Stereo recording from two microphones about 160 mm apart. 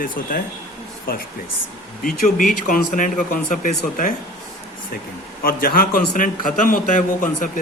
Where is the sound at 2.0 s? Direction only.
60° left (ahead or behind).